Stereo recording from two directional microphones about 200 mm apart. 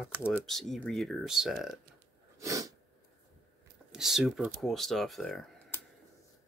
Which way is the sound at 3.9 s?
Centre (ahead or behind).